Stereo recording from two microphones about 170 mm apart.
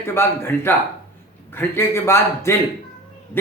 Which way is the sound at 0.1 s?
15° left (ahead or behind).